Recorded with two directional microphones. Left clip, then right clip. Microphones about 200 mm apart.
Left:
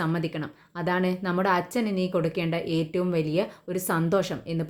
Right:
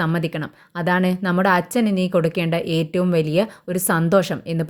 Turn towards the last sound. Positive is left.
turn(degrees=-40)  # may be behind; listen again after turning